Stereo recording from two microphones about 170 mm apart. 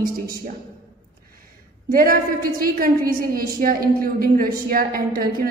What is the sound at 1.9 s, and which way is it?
A woman's voice, 60° right (ahead or behind).